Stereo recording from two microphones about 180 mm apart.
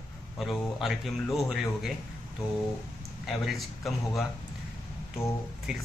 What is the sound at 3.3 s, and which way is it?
Speech, centre (ahead or behind).